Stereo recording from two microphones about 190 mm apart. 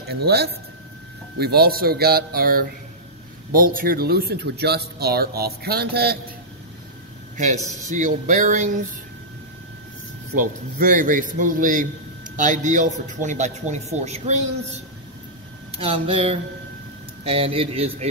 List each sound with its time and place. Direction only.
0.1 s a man's voice: 55° right (ahead or behind)
7.3 s a man's voice: 40° right (ahead or behind)
10.3 s a man's voice: 45° right (ahead or behind)
15.8 s a sound: 30° right (ahead or behind)
17.2 s a man's voice: 30° right (ahead or behind)